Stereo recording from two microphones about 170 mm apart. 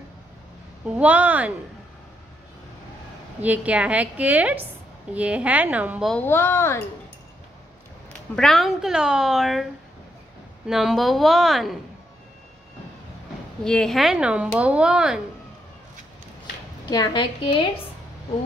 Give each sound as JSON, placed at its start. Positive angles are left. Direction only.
{"t": 0.8, "sound": "a woman's voice", "side_deg": -10}
{"t": 3.3, "sound": "a woman's voice", "side_deg": -10}
{"t": 6.1, "sound": "a child's voice", "side_deg": 10}
{"t": 8.4, "sound": "speech", "side_deg": 0}
{"t": 10.7, "sound": "speech", "side_deg": 0}
{"t": 13.7, "sound": "speech", "side_deg": 5}
{"t": 16.9, "sound": "a woman's voice", "side_deg": 25}